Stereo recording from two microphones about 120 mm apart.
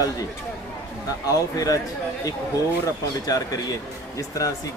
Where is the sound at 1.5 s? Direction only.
30° left (ahead or behind).